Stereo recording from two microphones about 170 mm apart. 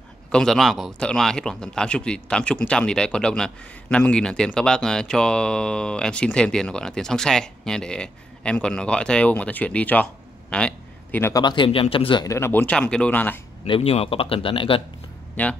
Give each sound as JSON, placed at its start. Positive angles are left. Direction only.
{"t": 0.3, "sound": "a man's voice", "side_deg": 5}
{"t": 11.4, "sound": "speech", "side_deg": 30}
{"t": 13.7, "sound": "speech", "side_deg": 35}
{"t": 15.4, "sound": "speech", "side_deg": 10}